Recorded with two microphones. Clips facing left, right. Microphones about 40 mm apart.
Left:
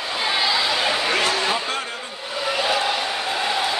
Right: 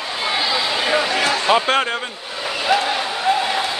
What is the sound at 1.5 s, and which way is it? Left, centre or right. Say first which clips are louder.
Speech: right 8 dB; right.